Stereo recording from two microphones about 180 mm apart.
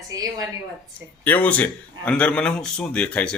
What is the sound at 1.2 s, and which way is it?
Speech, 10° left (ahead or behind).